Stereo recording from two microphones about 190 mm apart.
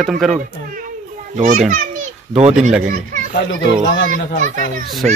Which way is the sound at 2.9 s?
40° right (ahead or behind).